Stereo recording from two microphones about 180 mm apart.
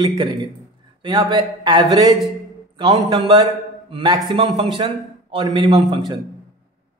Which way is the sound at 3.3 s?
25° right (ahead or behind).